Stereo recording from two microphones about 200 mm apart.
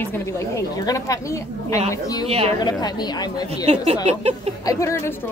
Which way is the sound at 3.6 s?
35° right (ahead or behind).